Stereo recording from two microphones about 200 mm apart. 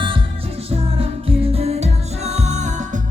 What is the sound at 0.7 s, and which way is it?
Music, 30° right (ahead or behind).